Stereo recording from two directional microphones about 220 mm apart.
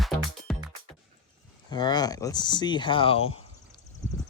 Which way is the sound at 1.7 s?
20° left (ahead or behind).